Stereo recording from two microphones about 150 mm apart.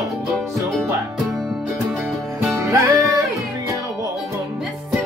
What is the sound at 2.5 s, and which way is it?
Music, 20° right (ahead or behind).